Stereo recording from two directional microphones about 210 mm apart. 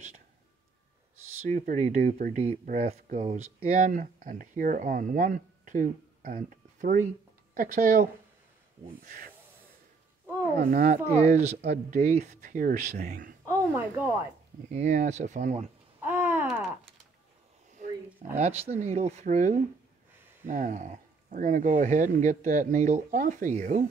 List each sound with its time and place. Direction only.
1.4 s speech: 35° right (ahead or behind)
10.6 s speech: 40° right (ahead or behind)
13.5 s speech: 10° right (ahead or behind)
14.7 s speech: 35° right (ahead or behind)
16.0 s a sound: 10° right (ahead or behind)
17.8 s roaring cats: 35° right (ahead or behind)
18.3 s speech: 30° right (ahead or behind)